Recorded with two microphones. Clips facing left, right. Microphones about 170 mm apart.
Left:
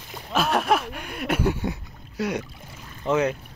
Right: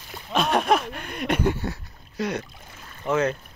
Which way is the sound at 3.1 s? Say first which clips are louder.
Left 1 dB; 15° left (ahead or behind).